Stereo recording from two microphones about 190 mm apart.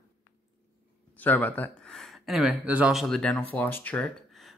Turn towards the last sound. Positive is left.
turn(degrees=5)  # may be behind; listen again after turning